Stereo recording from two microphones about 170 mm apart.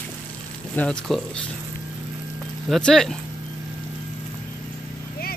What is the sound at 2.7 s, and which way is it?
Speech, 5° left (ahead or behind).